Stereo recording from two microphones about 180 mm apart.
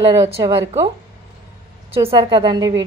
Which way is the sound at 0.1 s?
20° right (ahead or behind).